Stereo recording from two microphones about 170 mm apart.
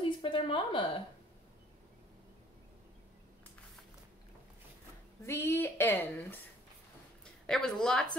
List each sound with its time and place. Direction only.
0.0 s a sound: 30° left (ahead or behind)
5.2 s speech: 15° left (ahead or behind)
7.4 s a woman's voice: 5° left (ahead or behind)